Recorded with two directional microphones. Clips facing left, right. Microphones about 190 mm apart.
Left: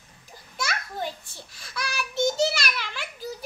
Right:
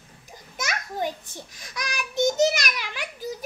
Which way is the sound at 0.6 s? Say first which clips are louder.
Right 2 dB; 15° right (ahead or behind).